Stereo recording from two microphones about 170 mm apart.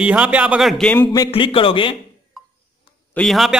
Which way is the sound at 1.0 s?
20° left (ahead or behind).